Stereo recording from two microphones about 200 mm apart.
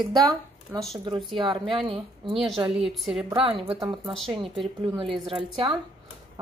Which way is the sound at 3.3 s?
25° right (ahead or behind).